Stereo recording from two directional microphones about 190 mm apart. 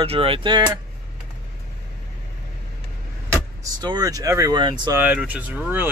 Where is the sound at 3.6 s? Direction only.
20° right (ahead or behind).